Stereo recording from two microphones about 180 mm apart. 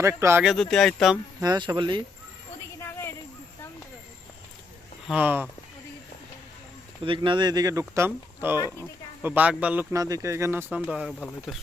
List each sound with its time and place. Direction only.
0.0 s speech: 15° right (ahead or behind)
0.4 s speech: centre (ahead or behind)
1.4 s speech: 25° right (ahead or behind)
2.8 s a sound: 15° left (ahead or behind)
5.0 s speech: 10° right (ahead or behind)
7.0 s speech: 30° right (ahead or behind); by 9.8 s 5° right (ahead or behind)
9.9 s speech: 20° right (ahead or behind); by 11.5 s centre (ahead or behind)